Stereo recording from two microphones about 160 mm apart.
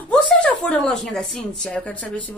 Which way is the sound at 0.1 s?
5° left (ahead or behind).